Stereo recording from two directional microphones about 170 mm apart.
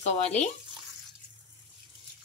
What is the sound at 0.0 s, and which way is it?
Speech, 40° left (ahead or behind).